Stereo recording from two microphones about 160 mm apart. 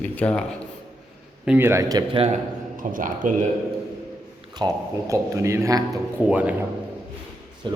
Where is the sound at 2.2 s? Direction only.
55° right (ahead or behind).